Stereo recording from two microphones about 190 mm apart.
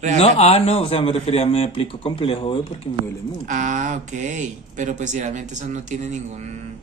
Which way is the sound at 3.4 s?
40° right (ahead or behind).